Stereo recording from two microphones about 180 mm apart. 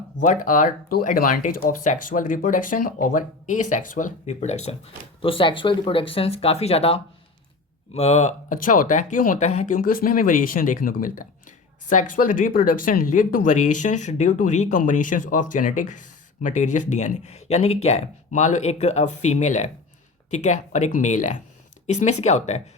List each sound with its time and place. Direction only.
0.2 s speech: 45° left (ahead or behind)